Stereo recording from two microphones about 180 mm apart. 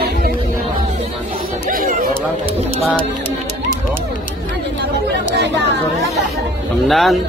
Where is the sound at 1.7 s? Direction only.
50° right (ahead or behind).